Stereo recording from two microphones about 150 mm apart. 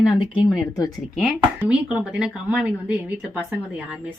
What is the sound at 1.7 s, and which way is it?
Speech, 10° right (ahead or behind).